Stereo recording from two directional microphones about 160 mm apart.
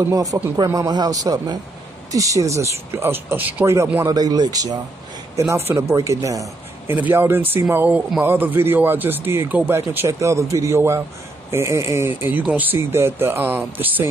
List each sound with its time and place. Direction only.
0.1 s a man's voice: 20° right (ahead or behind)